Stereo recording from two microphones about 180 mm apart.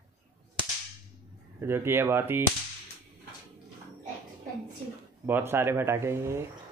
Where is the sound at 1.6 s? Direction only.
15° right (ahead or behind).